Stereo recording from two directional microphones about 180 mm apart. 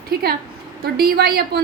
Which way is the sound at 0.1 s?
60° right (ahead or behind).